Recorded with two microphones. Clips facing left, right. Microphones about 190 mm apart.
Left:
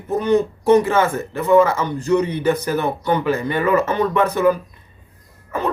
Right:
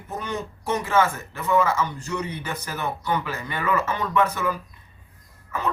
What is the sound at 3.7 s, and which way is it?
Speech, 55° left (ahead or behind).